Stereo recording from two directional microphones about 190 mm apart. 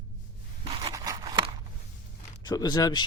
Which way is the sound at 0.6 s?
30° right (ahead or behind).